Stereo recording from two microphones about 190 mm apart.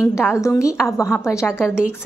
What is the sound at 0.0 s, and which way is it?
A woman's voice, 15° left (ahead or behind).